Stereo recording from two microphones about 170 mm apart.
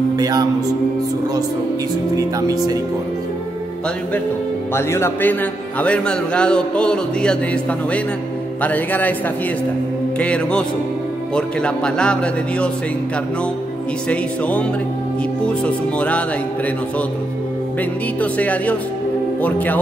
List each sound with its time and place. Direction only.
0.2 s speech: 20° right (ahead or behind)
2.1 s speech: 20° right (ahead or behind)
4.7 s speech: 15° left (ahead or behind)
8.6 s speech: 10° left (ahead or behind)
10.1 s speech: 5° left (ahead or behind)
14.0 s speech: 5° left (ahead or behind)
18.2 s speech: 10° left (ahead or behind)